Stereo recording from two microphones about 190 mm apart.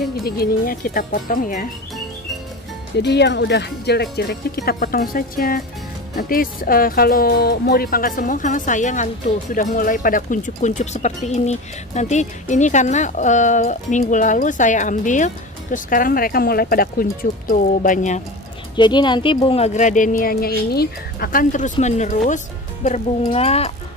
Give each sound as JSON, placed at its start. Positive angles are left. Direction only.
{"t": 0.2, "sound": "speech", "side_deg": 50}
{"t": 3.0, "sound": "speech", "side_deg": 65}
{"t": 18.8, "sound": "speech", "side_deg": 25}